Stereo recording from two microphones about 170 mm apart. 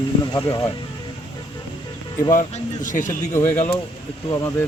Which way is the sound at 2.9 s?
45° left (ahead or behind).